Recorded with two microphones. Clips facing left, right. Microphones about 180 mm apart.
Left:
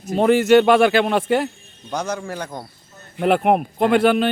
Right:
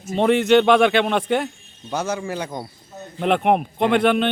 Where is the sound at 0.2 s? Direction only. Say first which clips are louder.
Left 2 dB; 5° left (ahead or behind); by 2.6 s 10° right (ahead or behind).